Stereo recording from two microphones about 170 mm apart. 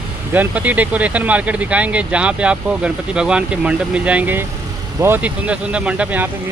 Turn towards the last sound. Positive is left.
turn(degrees=-10)  # may be behind; listen again after turning